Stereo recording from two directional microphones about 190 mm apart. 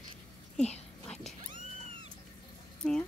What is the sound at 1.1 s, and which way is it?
Cat, 5° left (ahead or behind).